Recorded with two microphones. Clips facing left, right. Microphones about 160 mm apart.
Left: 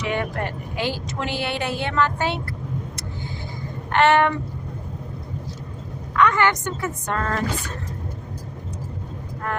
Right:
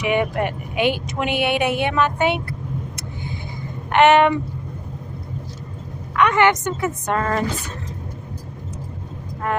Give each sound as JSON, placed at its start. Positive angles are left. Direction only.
{"t": 0.0, "sound": "speech", "side_deg": -15}
{"t": 3.9, "sound": "a woman's voice", "side_deg": -20}
{"t": 6.1, "sound": "a woman's voice", "side_deg": -20}